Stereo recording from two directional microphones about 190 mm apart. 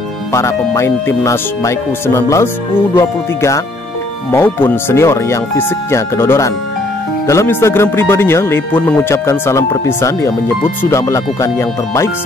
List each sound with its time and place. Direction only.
0.3 s speech: 15° left (ahead or behind)